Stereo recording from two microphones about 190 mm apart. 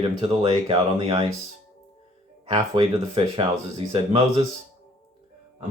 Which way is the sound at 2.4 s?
30° right (ahead or behind).